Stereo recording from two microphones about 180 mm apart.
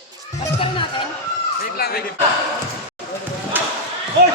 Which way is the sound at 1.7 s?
60° left (ahead or behind).